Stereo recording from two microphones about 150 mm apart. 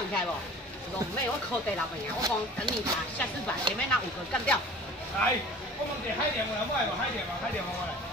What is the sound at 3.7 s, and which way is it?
Speech, 30° right (ahead or behind).